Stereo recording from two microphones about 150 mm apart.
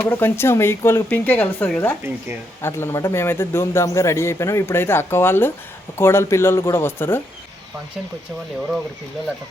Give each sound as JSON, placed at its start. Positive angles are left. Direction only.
{"t": 0.0, "sound": "a man's voice", "side_deg": 15}